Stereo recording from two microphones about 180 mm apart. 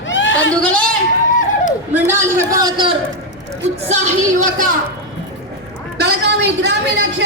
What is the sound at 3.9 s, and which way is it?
Speech, 40° right (ahead or behind).